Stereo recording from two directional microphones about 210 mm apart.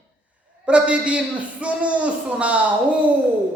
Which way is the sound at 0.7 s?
5° right (ahead or behind).